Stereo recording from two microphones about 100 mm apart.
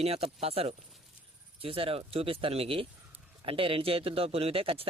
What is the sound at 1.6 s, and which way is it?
A man's voice, 70° right (ahead or behind).